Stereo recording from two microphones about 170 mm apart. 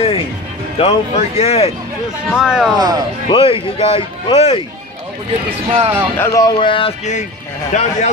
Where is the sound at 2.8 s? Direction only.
25° right (ahead or behind).